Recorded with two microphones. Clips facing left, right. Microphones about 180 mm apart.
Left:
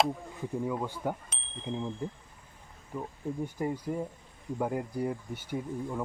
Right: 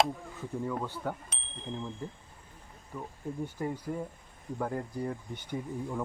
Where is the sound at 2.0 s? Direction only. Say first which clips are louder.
Left 4 dB; 15° left (ahead or behind).